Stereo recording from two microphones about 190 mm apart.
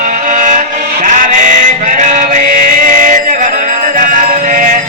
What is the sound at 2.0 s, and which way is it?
Music, 40° right (ahead or behind).